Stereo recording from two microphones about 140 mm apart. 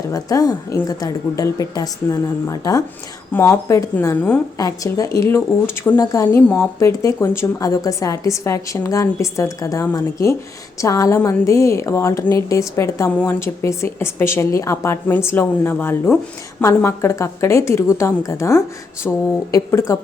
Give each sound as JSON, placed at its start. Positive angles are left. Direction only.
{"t": 0.1, "sound": "speech", "side_deg": 25}
{"t": 4.5, "sound": "speech", "side_deg": 25}
{"t": 19.1, "sound": "a sound", "side_deg": 10}
{"t": 19.5, "sound": "speech", "side_deg": 25}